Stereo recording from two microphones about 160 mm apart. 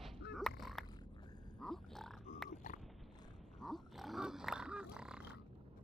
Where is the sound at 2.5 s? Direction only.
50° left (ahead or behind).